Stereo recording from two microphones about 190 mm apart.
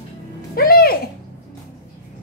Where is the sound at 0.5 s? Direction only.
50° left (ahead or behind).